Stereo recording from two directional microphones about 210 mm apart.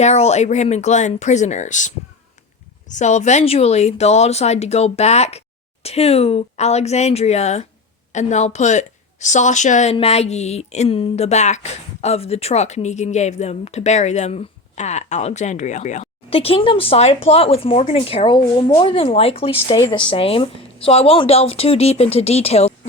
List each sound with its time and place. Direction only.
0.0 s a woman's voice: 30° left (ahead or behind)
2.9 s a woman's voice: 35° left (ahead or behind)